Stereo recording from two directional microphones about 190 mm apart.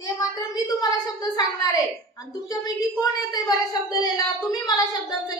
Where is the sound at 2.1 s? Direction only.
20° left (ahead or behind).